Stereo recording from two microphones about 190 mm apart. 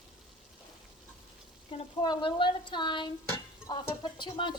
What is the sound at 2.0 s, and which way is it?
A woman's voice, 25° left (ahead or behind).